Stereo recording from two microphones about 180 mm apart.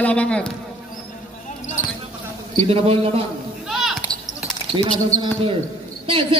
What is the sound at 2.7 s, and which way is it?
Speech, 30° right (ahead or behind).